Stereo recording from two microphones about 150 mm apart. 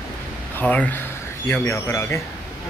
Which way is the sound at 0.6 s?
10° left (ahead or behind).